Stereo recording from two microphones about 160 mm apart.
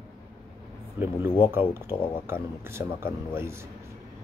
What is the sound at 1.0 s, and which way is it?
Speech, 15° right (ahead or behind).